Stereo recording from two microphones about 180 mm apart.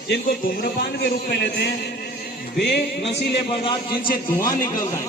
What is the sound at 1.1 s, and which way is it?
Speech, 65° left (ahead or behind).